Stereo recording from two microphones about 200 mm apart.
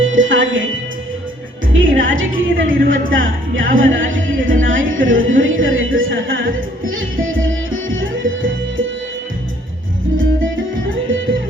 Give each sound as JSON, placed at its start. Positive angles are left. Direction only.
{"t": 0.0, "sound": "music", "side_deg": -75}
{"t": 1.7, "sound": "music", "side_deg": -75}
{"t": 3.1, "sound": "speech", "side_deg": -75}
{"t": 6.9, "sound": "music", "side_deg": -80}
{"t": 10.2, "sound": "music", "side_deg": -75}